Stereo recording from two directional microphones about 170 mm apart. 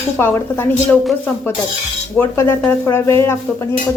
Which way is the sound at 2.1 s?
15° left (ahead or behind).